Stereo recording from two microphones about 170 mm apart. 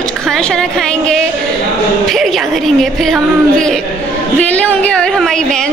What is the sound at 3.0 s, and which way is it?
A woman's voice, 5° left (ahead or behind).